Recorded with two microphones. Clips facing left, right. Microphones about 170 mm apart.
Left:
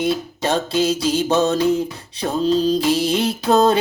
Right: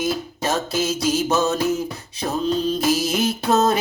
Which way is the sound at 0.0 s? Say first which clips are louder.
Left 3 dB; 30° left (ahead or behind).